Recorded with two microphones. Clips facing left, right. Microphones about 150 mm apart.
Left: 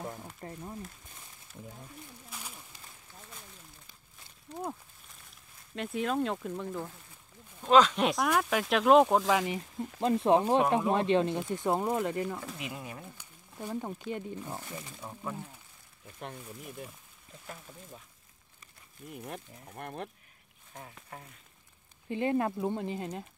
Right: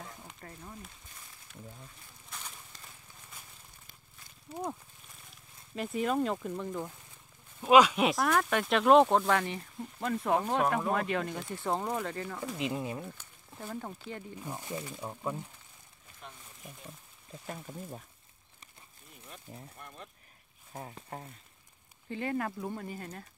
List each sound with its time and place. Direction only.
0.4 s speech: 25° left (ahead or behind)
2.2 s a sound: 10° left (ahead or behind)
5.8 s speech: centre (ahead or behind)
7.6 s speech: 10° right (ahead or behind)
9.3 s speech: 15° left (ahead or behind)
10.9 s speech: 25° left (ahead or behind)
12.5 s speech: 25° right (ahead or behind)
13.2 s speech: 15° left (ahead or behind)
14.6 s speech: 15° right (ahead or behind)
19.1 s speech: 60° left (ahead or behind)
20.7 s speech: 35° right (ahead or behind)
22.1 s speech: 20° left (ahead or behind)